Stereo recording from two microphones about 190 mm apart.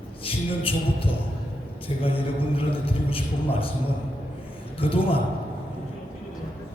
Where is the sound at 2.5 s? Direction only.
30° left (ahead or behind).